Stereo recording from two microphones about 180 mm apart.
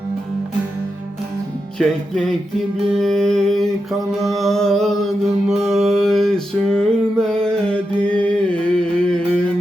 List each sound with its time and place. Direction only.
1.8 s humming: centre (ahead or behind)
4.2 s mantra: centre (ahead or behind)